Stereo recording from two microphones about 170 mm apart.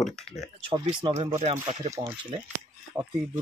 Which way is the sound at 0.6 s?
30° right (ahead or behind).